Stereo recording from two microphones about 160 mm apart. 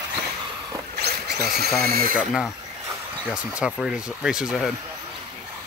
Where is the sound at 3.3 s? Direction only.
5° right (ahead or behind).